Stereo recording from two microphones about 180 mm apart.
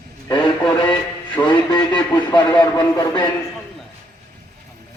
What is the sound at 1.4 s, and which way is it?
A man's voice, 25° left (ahead or behind).